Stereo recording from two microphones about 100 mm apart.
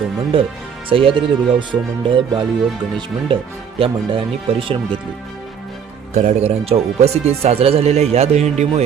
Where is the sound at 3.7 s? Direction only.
65° right (ahead or behind).